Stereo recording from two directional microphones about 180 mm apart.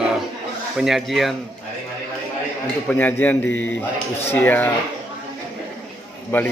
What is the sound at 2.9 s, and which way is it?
A man's voice, 10° left (ahead or behind).